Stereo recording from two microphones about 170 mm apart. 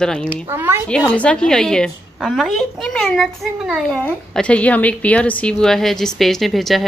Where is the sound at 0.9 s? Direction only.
5° left (ahead or behind).